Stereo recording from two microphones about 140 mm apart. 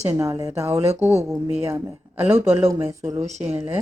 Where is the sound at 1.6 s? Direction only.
20° right (ahead or behind).